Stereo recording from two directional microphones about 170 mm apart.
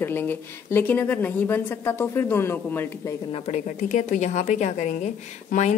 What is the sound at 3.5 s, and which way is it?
A woman's voice, 45° left (ahead or behind).